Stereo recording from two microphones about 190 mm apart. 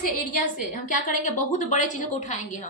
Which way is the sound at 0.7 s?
40° left (ahead or behind).